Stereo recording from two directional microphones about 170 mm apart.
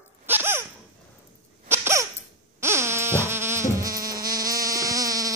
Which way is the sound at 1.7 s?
15° right (ahead or behind).